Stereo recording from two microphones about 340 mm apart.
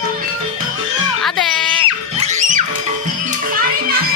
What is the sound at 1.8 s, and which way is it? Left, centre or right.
Music, centre.